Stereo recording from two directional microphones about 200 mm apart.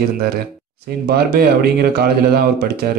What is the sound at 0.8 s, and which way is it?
Speech, 50° right (ahead or behind).